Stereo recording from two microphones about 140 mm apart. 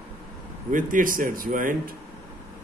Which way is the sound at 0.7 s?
75° right (ahead or behind).